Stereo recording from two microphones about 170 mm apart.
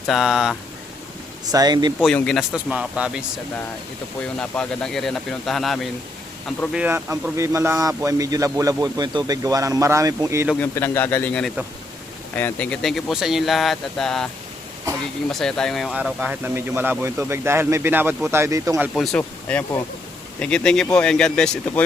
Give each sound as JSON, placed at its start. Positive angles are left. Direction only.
{"t": 0.1, "sound": "speech", "side_deg": 0}
{"t": 1.5, "sound": "a man's voice", "side_deg": -25}
{"t": 2.0, "sound": "speech", "side_deg": 0}
{"t": 4.4, "sound": "speech", "side_deg": 5}
{"t": 6.7, "sound": "a man's voice", "side_deg": -10}
{"t": 10.6, "sound": "a man's voice", "side_deg": 10}
{"t": 15.3, "sound": "speech", "side_deg": 5}
{"t": 18.9, "sound": "a man's voice", "side_deg": 5}